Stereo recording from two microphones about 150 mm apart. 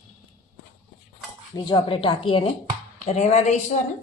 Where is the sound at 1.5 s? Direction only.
30° left (ahead or behind).